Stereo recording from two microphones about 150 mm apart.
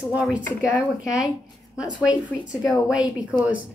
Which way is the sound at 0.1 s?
10° right (ahead or behind).